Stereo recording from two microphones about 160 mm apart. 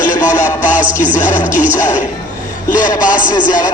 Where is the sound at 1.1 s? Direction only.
50° left (ahead or behind).